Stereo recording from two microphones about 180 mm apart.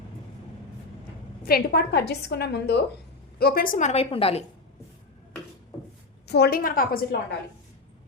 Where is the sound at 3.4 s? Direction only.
55° left (ahead or behind); by 4.4 s 30° left (ahead or behind).